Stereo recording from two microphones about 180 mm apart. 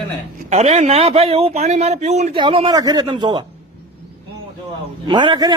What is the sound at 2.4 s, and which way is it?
Speech, 30° right (ahead or behind).